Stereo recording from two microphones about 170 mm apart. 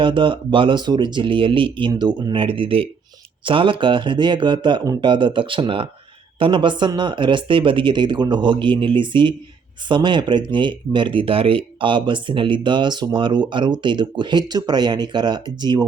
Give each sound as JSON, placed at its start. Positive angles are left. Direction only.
{"t": 0.0, "sound": "speech", "side_deg": -30}